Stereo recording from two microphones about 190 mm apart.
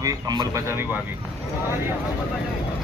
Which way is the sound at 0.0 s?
20° right (ahead or behind).